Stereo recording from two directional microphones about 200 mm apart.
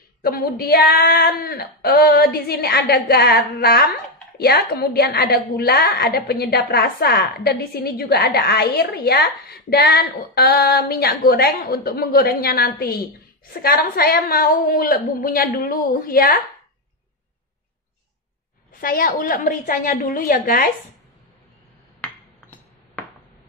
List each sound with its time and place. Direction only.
0.2 s a woman's voice: 50° left (ahead or behind)
18.7 s a woman's voice: 45° left (ahead or behind)
22.0 s a sound: 5° left (ahead or behind)